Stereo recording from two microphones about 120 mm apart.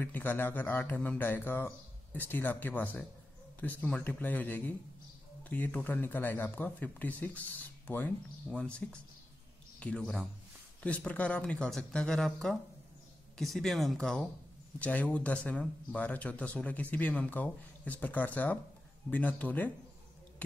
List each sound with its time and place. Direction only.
0.0 s a man's voice: 15° left (ahead or behind)